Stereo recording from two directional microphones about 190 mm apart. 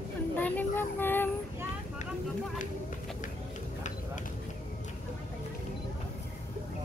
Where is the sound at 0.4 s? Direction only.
10° left (ahead or behind).